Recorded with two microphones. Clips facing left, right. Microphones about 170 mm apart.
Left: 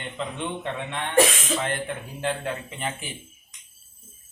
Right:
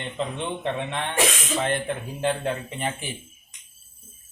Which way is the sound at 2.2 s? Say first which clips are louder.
Right 3 dB; 25° right (ahead or behind).